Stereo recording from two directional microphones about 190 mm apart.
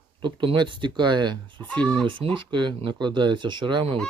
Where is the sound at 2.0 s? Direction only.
25° right (ahead or behind).